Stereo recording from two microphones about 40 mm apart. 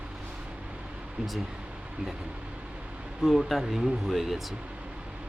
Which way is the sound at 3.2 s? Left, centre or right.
Centre.